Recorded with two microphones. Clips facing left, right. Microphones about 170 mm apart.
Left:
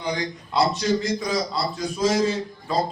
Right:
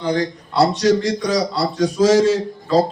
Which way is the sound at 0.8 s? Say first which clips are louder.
Right 7 dB; 80° right.